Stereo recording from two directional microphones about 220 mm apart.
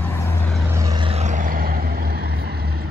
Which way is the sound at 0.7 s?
15° right (ahead or behind).